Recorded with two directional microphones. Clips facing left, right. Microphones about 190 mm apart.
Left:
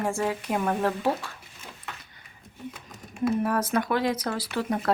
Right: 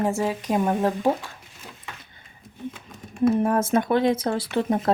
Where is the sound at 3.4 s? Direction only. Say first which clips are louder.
Right 4 dB; 25° right (ahead or behind).